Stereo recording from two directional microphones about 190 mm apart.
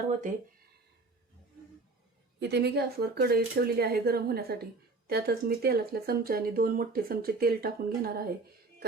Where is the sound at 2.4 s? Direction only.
65° right (ahead or behind).